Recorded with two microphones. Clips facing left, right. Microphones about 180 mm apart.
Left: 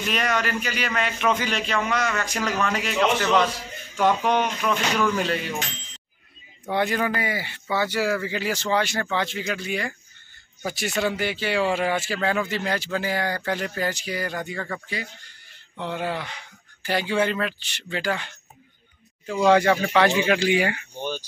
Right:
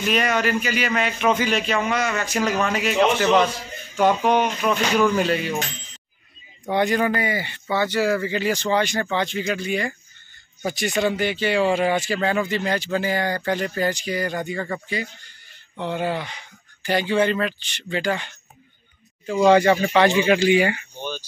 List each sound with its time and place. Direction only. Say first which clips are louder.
0.1 s a man's voice: right 4 dB; 5° right (ahead or behind)
6.7 s speech: right 3 dB; centre (ahead or behind)
19.4 s speech: right 3 dB; centre (ahead or behind)